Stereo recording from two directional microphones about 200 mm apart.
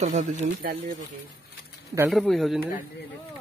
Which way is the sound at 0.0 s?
35° right (ahead or behind).